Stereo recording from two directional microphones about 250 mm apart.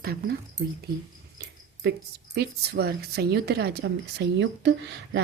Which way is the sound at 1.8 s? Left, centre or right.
Right.